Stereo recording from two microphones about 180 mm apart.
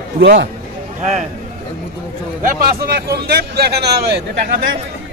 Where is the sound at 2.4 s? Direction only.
50° right (ahead or behind).